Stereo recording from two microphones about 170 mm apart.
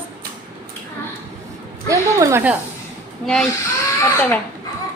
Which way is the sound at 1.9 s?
20° right (ahead or behind).